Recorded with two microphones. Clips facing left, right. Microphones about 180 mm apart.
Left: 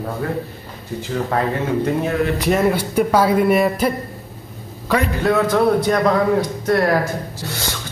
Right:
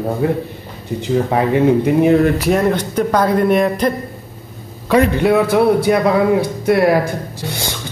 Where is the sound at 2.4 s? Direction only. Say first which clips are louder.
Right 2 dB; centre (ahead or behind).